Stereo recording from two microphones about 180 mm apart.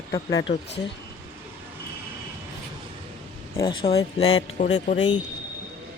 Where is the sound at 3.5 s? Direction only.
25° left (ahead or behind).